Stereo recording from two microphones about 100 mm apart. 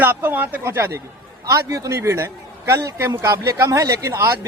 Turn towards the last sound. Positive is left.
turn(degrees=-30)  # may be behind; listen again after turning